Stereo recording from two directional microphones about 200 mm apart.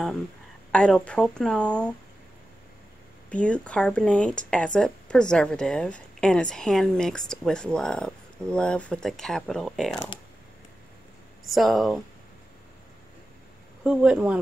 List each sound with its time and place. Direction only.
0.7 s speech: 5° left (ahead or behind)
3.3 s speech: 5° left (ahead or behind)
11.4 s speech: centre (ahead or behind)
13.8 s speech: 5° right (ahead or behind)